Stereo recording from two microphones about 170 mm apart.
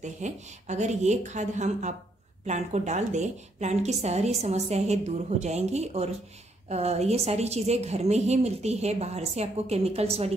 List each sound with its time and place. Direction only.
0.0 s a woman's voice: 45° right (ahead or behind)